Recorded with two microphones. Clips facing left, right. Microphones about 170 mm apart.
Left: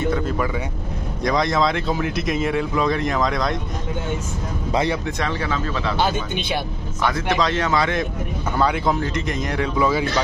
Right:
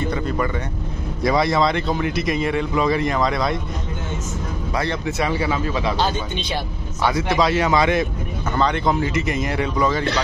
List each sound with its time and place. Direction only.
0.0 s vehicle: centre (ahead or behind)
1.2 s speech: 5° right (ahead or behind)
5.0 s speech: 10° right (ahead or behind)
6.0 s speech: 10° left (ahead or behind)
7.0 s speech: 10° right (ahead or behind)
8.5 s speech: 5° left (ahead or behind)
9.8 s speech: 10° left (ahead or behind)